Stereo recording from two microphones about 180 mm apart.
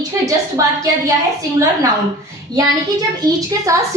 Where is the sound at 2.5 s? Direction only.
20° right (ahead or behind).